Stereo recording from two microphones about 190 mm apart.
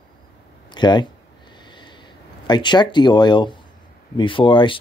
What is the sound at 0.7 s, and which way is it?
Speech, 25° left (ahead or behind).